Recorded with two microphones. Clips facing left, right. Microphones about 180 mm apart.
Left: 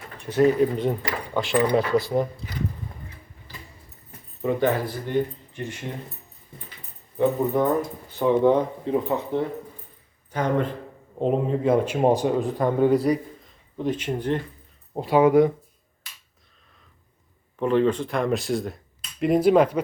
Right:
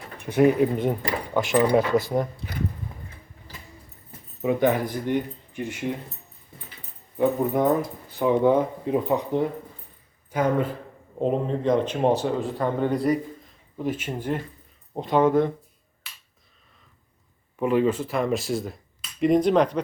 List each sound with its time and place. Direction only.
0.3 s speech: 10° right (ahead or behind)
4.4 s speech: 15° right (ahead or behind)
7.2 s speech: 10° right (ahead or behind)
11.2 s speech: 5° left (ahead or behind)
13.7 s speech: 5° right (ahead or behind)
14.9 s speech: 5° left (ahead or behind)
17.6 s speech: 10° right (ahead or behind); by 19.8 s 5° left (ahead or behind)